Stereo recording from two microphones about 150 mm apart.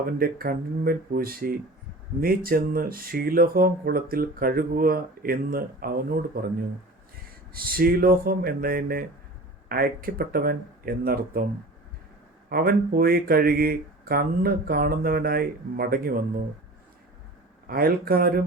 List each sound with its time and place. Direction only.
0.2 s speech: 80° right
7.5 s speech: 80° right
12.5 s speech: 85° right
17.7 s speech: 80° right